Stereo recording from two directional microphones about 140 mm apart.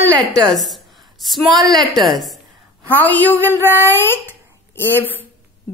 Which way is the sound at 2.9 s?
10° left (ahead or behind).